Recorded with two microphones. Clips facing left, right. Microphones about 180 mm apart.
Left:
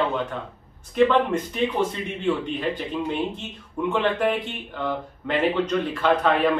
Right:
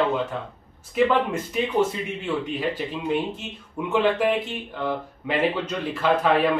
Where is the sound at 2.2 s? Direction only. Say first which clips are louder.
Left 3 dB; 5° right (ahead or behind).